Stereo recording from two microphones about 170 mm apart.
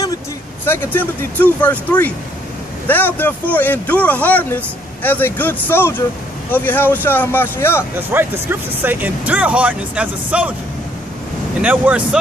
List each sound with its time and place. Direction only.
0.9 s speech: 10° left (ahead or behind)
7.9 s speech: 10° right (ahead or behind)
11.6 s speech: 10° right (ahead or behind)